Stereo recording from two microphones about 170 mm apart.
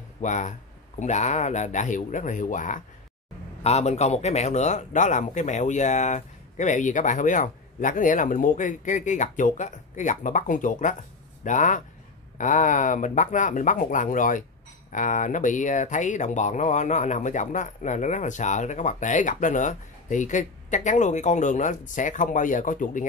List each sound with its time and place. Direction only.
0.2 s speech: 45° left (ahead or behind)